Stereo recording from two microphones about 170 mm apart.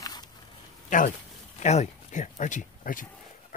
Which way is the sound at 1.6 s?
40° left (ahead or behind).